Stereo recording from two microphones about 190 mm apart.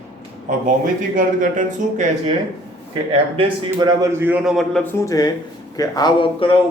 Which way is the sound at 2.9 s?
20° right (ahead or behind).